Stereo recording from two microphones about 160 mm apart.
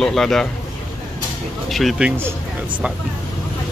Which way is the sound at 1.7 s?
Centre (ahead or behind).